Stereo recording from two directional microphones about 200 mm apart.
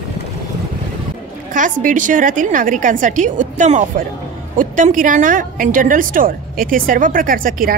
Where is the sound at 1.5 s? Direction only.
40° right (ahead or behind).